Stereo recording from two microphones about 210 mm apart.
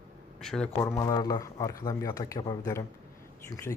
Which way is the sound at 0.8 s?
15° left (ahead or behind).